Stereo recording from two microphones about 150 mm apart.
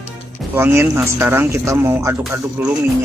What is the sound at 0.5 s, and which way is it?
Speech, 15° right (ahead or behind).